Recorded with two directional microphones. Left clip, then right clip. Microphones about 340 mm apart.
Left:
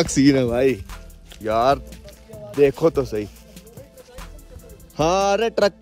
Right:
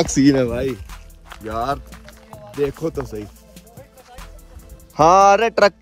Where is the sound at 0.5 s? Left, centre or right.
Centre.